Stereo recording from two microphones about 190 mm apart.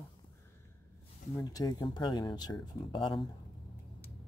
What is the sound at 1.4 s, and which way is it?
Speech, 20° left (ahead or behind).